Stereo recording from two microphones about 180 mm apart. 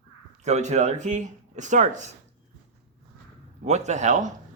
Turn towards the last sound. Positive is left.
turn(degrees=-40)  # may be behind; listen again after turning